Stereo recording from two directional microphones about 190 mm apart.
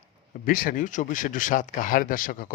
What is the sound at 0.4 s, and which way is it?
A man's voice, 45° left (ahead or behind).